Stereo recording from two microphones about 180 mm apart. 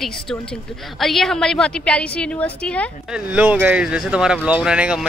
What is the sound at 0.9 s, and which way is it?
A woman's voice, centre (ahead or behind).